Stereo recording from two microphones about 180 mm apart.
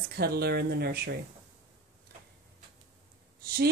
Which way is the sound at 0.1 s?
60° right (ahead or behind).